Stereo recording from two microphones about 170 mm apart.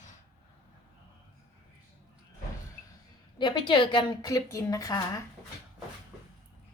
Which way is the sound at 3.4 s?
30° left (ahead or behind).